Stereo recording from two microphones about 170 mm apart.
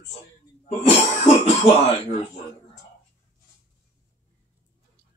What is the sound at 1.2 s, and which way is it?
Speech, 40° left (ahead or behind).